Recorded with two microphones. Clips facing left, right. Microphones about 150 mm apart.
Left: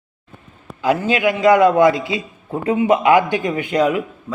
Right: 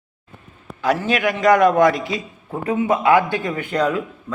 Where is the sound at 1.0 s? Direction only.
20° left (ahead or behind).